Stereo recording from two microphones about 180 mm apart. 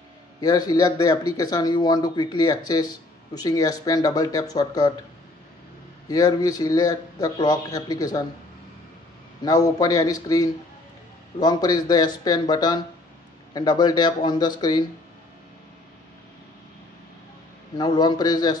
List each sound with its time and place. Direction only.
0.4 s speech: 20° left (ahead or behind)
6.0 s speech: 20° left (ahead or behind)
9.4 s speech: 20° left (ahead or behind)
17.7 s speech: 25° left (ahead or behind)